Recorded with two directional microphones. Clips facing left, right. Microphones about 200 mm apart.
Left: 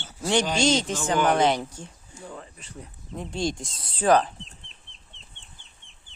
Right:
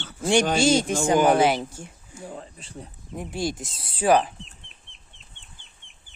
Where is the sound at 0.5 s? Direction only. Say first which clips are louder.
Right 3 dB; 10° right (ahead or behind).